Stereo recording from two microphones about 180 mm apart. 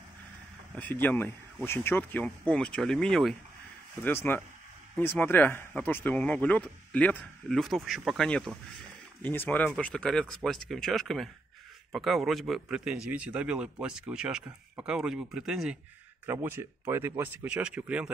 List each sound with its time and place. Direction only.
1.0 s speech: 10° left (ahead or behind); by 18.1 s 5° right (ahead or behind)